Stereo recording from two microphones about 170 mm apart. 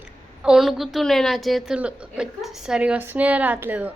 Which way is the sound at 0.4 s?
5° right (ahead or behind).